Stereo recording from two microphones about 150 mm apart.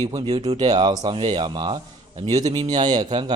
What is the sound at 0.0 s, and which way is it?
Speech, 25° right (ahead or behind).